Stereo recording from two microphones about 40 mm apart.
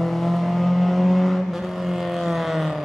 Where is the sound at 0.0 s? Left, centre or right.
Centre.